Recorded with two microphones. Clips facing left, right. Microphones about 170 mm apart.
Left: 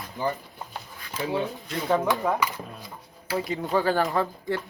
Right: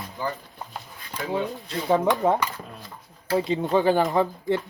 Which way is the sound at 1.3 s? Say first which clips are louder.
Right 1 dB; 15° right (ahead or behind).